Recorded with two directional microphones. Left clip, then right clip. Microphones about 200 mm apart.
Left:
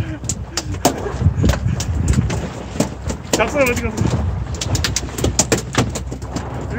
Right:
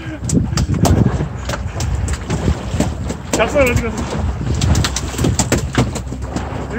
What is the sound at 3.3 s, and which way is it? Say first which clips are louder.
Speech: right 2 dB; 10° left (ahead or behind).